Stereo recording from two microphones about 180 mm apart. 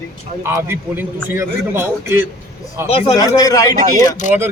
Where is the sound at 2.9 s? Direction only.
30° left (ahead or behind).